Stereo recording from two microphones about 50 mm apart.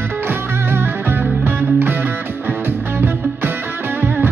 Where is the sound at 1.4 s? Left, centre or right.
Right.